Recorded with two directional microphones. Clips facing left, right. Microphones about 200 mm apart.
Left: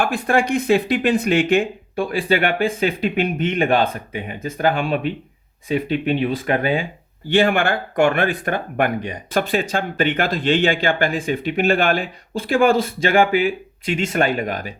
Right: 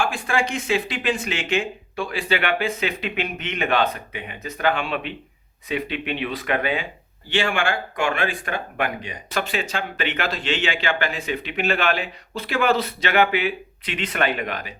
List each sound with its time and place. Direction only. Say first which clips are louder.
0.0 s speech: left 5 dB; 60° left (ahead or behind); by 6.8 s 40° left (ahead or behind)
7.3 s speech: left 6 dB; 55° left (ahead or behind)